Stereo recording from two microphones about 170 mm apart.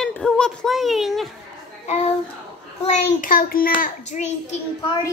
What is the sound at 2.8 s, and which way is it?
A child's voice, 45° left (ahead or behind).